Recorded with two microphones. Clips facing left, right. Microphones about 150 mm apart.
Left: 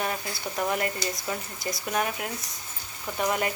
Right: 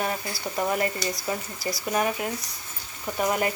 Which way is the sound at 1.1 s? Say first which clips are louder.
Right 3 dB; 20° left (ahead or behind).